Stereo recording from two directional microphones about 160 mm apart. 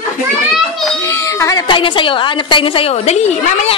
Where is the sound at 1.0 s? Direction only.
20° left (ahead or behind).